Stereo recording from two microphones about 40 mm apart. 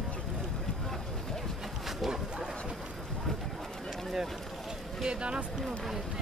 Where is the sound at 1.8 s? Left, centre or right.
Centre.